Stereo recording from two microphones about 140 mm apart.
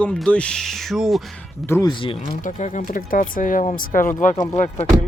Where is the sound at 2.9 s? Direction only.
80° left.